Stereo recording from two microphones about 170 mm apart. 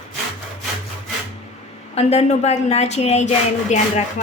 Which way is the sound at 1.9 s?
40° left (ahead or behind).